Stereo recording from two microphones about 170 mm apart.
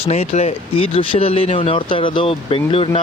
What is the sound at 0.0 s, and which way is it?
Speech, 40° left (ahead or behind).